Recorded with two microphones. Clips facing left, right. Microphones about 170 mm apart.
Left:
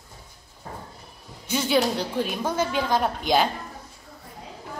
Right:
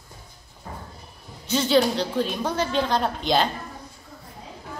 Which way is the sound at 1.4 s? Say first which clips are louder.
Right 2 dB; 10° left (ahead or behind).